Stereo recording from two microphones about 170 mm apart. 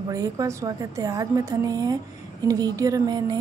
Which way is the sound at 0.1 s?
20° right (ahead or behind).